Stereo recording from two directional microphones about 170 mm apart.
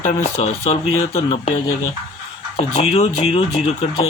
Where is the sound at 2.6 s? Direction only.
40° left (ahead or behind).